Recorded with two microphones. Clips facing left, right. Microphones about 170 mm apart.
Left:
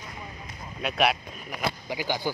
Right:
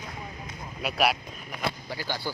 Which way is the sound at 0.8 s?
5° right (ahead or behind).